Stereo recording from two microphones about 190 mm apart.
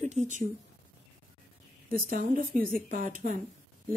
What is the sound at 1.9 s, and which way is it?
Speech, 45° right (ahead or behind).